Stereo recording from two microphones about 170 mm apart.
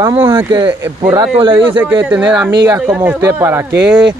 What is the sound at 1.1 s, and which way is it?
Speech, 25° right (ahead or behind).